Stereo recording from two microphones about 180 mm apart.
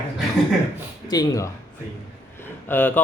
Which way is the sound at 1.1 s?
20° left (ahead or behind).